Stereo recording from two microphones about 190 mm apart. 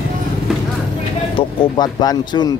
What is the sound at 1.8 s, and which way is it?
Speech, 20° left (ahead or behind).